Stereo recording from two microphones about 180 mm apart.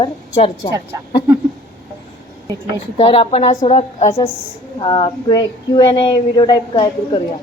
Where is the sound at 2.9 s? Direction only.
30° left (ahead or behind).